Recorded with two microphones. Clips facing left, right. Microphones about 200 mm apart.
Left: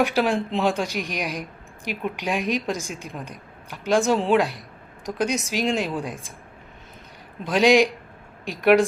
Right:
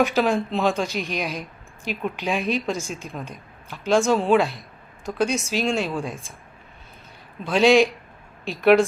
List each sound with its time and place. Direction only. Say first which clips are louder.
0.0 s speech: right 1 dB; 15° left (ahead or behind)
7.4 s speech: right 1 dB; 15° left (ahead or behind)